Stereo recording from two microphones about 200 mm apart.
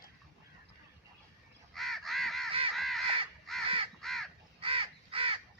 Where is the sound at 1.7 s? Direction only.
Centre (ahead or behind).